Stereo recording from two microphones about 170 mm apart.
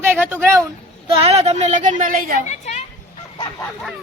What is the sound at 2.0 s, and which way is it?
Speech, 55° right (ahead or behind).